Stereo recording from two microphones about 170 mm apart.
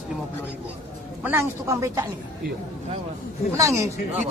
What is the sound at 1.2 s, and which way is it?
Speech, 10° right (ahead or behind).